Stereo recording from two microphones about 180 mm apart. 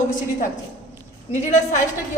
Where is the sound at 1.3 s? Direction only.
40° left (ahead or behind).